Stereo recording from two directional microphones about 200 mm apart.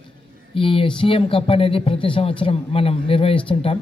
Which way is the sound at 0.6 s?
25° left (ahead or behind).